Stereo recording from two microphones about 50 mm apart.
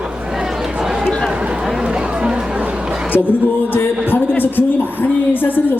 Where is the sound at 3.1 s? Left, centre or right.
Left.